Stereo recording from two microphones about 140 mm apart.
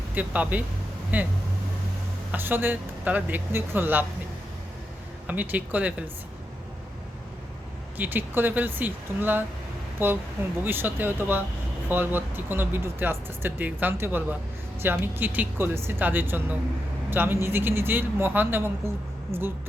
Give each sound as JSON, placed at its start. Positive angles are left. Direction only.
{"t": 0.1, "sound": "speech", "side_deg": -10}
{"t": 2.3, "sound": "speech", "side_deg": -15}
{"t": 5.3, "sound": "speech", "side_deg": -10}
{"t": 7.9, "sound": "a man's voice", "side_deg": -15}